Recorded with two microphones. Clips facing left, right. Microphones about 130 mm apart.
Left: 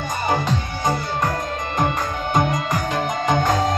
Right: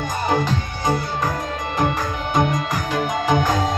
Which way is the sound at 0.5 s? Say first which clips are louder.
Even; 5° right (ahead or behind).